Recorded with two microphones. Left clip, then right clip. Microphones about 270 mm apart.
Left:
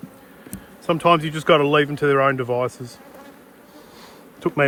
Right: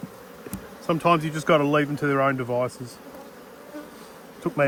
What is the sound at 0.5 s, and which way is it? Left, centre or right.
Speech, left.